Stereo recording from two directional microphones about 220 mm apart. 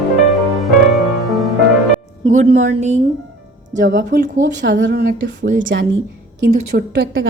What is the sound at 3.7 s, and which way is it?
A woman's voice, 55° right (ahead or behind).